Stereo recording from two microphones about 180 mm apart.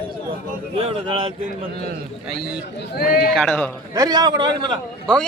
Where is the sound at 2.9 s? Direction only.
55° left (ahead or behind).